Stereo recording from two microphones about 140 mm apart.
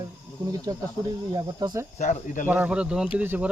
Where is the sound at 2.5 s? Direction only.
10° right (ahead or behind).